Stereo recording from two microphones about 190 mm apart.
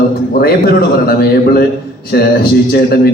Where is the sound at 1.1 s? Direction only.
55° left (ahead or behind).